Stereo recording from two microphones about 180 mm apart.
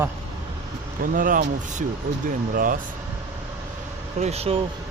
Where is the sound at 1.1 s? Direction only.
50° right (ahead or behind).